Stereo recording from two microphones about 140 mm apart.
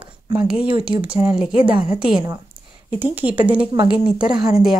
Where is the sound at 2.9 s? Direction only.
15° right (ahead or behind).